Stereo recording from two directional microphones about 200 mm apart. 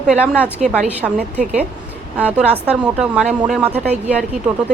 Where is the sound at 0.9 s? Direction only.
5° right (ahead or behind).